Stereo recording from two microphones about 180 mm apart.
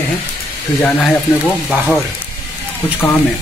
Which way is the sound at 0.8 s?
10° left (ahead or behind).